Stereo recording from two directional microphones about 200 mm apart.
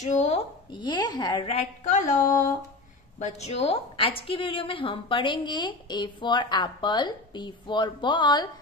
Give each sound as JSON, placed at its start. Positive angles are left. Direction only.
{"t": 0.0, "sound": "a woman's voice", "side_deg": 35}
{"t": 1.9, "sound": "a sound", "side_deg": 40}
{"t": 3.2, "sound": "a woman's voice", "side_deg": 35}